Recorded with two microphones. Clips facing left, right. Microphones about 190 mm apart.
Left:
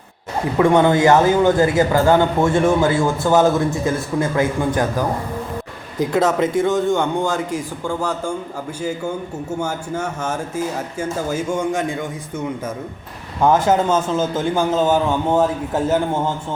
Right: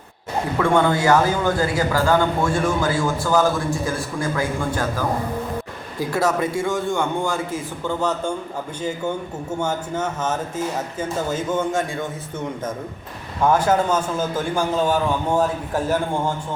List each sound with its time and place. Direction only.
0.6 s a man's voice: 20° left (ahead or behind)
9.6 s speech: 10° left (ahead or behind)
13.4 s a man's voice: 25° left (ahead or behind)